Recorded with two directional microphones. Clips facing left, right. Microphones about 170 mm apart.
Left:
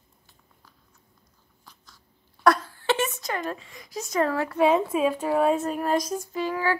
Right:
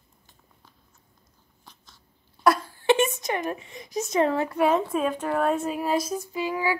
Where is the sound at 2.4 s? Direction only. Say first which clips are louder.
Right 1 dB; 15° right (ahead or behind).